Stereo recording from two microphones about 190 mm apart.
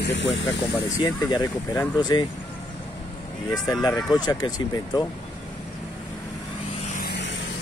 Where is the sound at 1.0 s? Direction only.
20° left (ahead or behind).